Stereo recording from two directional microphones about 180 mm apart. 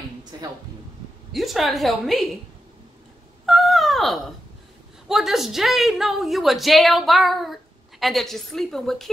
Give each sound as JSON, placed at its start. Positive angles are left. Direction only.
{"t": 0.3, "sound": "a woman's voice", "side_deg": -20}
{"t": 1.3, "sound": "a woman's voice", "side_deg": 0}
{"t": 3.4, "sound": "a sound", "side_deg": 0}
{"t": 5.0, "sound": "a woman's voice", "side_deg": 0}